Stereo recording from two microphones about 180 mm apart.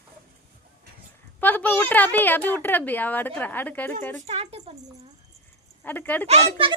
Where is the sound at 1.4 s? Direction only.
10° left (ahead or behind).